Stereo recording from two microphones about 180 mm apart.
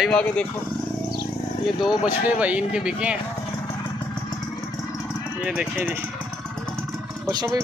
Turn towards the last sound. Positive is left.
turn(degrees=-20)  # may be behind; listen again after turning